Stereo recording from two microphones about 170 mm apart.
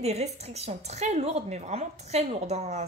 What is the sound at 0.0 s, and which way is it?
A woman's voice, 40° right (ahead or behind).